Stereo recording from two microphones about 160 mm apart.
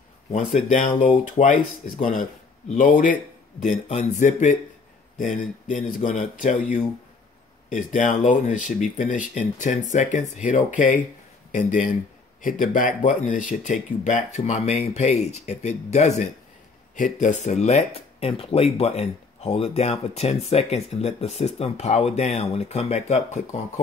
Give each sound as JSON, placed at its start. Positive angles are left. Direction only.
{"t": 0.6, "sound": "speech", "side_deg": 50}